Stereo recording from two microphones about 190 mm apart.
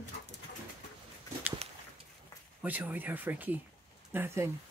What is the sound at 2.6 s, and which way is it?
Speech, 10° right (ahead or behind).